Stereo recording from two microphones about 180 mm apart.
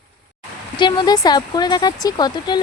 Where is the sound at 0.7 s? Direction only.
25° left (ahead or behind).